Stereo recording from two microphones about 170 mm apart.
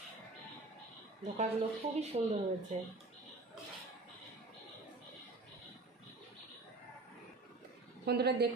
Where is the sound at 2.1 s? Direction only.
35° right (ahead or behind).